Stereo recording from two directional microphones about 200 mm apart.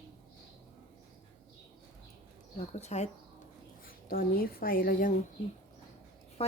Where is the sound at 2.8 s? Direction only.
35° left (ahead or behind).